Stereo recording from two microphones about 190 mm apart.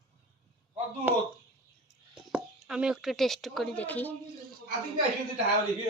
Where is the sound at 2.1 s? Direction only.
5° right (ahead or behind).